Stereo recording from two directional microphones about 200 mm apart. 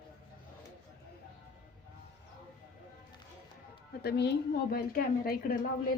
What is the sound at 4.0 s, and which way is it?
A woman's voice, 55° left (ahead or behind).